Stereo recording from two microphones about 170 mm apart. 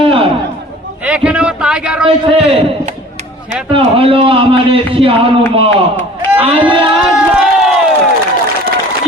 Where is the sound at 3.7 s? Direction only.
30° right (ahead or behind).